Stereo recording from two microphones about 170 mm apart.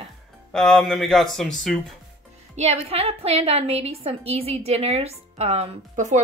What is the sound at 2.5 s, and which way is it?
A woman's voice, 35° right (ahead or behind).